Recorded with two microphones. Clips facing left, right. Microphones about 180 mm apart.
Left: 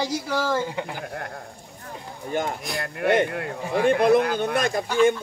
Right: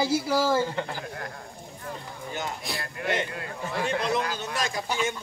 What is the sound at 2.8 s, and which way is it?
Speech, 60° left (ahead or behind).